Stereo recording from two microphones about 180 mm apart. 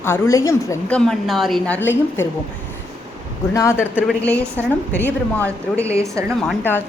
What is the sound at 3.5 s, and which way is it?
Speech, 15° left (ahead or behind).